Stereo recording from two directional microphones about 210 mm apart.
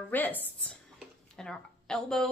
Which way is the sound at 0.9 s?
5° left (ahead or behind).